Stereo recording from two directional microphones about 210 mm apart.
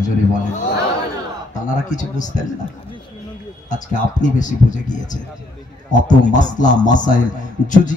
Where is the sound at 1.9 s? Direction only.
35° left (ahead or behind).